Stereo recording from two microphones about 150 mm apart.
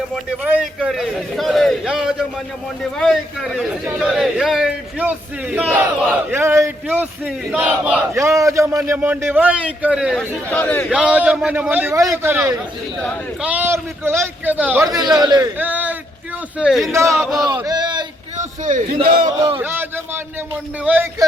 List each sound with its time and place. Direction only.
0.3 s a man's voice: 10° right (ahead or behind)
10.2 s a man's voice: 10° left (ahead or behind)
10.8 s a man's voice: 5° right (ahead or behind)
14.8 s a man's voice: 25° right (ahead or behind)
15.5 s a man's voice: 10° right (ahead or behind)
16.9 s a man's voice: 20° right (ahead or behind)
17.2 s a man's voice: centre (ahead or behind)
17.4 s speech: 25° right (ahead or behind)
18.3 s a sound: 60° right (ahead or behind)
19.0 s speech: 65° right (ahead or behind)
19.5 s speech: 15° right (ahead or behind)